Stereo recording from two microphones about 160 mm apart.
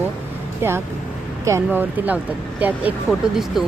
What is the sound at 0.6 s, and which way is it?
Speech, 15° right (ahead or behind).